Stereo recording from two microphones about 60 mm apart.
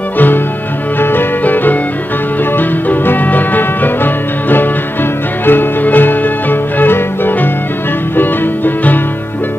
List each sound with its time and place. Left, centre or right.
0.9 s music: left